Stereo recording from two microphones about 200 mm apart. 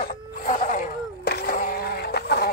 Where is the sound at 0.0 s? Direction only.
40° left (ahead or behind).